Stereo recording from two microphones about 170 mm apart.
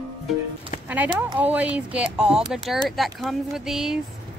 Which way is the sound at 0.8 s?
10° right (ahead or behind).